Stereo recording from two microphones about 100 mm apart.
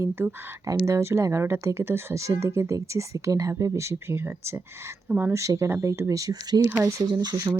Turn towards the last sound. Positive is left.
turn(degrees=-40)  # may be behind; listen again after turning